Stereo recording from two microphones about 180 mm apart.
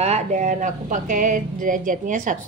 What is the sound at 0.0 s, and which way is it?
Speech, 40° right (ahead or behind).